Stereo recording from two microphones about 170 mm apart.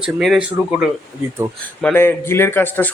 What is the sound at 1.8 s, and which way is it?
A man's voice, 10° left (ahead or behind).